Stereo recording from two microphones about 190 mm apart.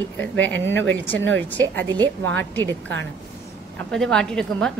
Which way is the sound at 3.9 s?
5° left (ahead or behind).